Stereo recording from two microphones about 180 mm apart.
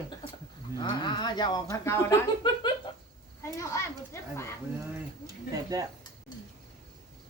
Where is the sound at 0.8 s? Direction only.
25° left (ahead or behind).